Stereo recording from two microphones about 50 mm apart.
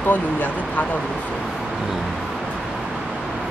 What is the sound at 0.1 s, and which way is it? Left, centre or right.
Speech, left.